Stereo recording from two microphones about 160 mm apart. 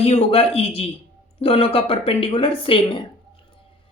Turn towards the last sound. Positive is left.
turn(degrees=35)  # may be behind; listen again after turning